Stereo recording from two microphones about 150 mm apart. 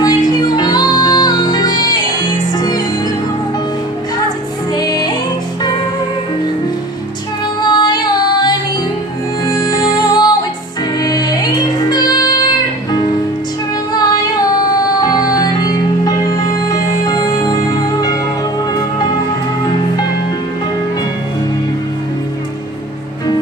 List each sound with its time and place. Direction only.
0.0 s music: 25° left (ahead or behind)
4.7 s music: 25° left (ahead or behind)
7.6 s music: 30° left (ahead or behind)
15.0 s music: 25° left (ahead or behind)